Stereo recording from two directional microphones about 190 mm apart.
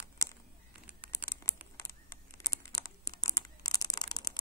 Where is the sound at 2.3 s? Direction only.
15° left (ahead or behind).